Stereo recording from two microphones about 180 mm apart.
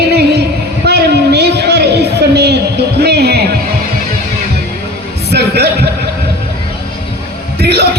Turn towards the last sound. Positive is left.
turn(degrees=-65)  # may be behind; listen again after turning